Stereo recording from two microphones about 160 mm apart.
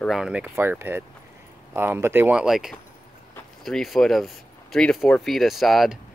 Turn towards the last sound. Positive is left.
turn(degrees=0)  # may be behind; listen again after turning